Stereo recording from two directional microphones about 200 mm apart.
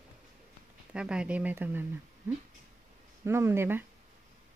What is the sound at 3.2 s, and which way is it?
Speech, 10° right (ahead or behind).